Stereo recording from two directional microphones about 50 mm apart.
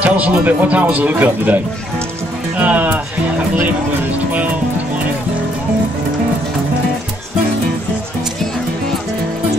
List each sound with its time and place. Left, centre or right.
0.0 s speech: right